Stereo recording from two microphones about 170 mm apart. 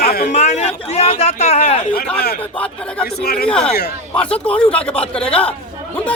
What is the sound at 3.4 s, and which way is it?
Speech, 5° left (ahead or behind).